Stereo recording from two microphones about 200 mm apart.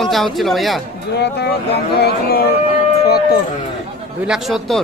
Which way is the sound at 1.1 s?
55° left (ahead or behind).